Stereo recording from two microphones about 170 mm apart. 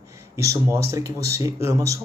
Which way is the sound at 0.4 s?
20° right (ahead or behind).